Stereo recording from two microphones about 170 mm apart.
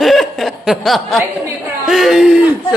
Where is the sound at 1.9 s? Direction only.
Centre (ahead or behind).